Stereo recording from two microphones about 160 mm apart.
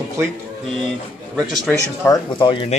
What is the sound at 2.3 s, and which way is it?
Speech, 30° left (ahead or behind).